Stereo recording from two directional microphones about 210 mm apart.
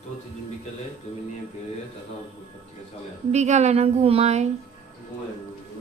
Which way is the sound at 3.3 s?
35° right (ahead or behind).